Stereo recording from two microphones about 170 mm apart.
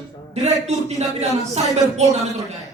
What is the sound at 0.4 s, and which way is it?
Speech, 40° right (ahead or behind).